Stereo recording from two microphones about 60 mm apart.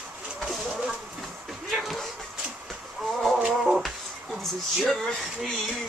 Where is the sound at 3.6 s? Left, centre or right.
Centre.